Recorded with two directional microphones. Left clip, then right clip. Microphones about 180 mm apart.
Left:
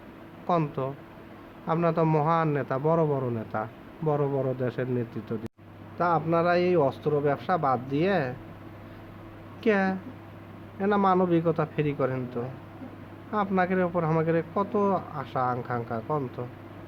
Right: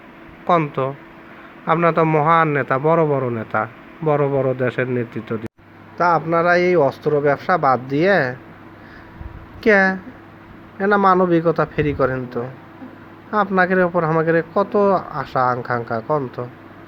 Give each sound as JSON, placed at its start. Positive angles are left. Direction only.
{"t": 0.4, "sound": "a man's voice", "side_deg": -20}
{"t": 9.6, "sound": "a man's voice", "side_deg": -20}